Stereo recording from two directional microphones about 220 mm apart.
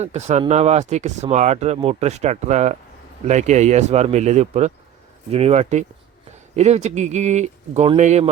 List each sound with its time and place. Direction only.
0.0 s speech: 30° right (ahead or behind)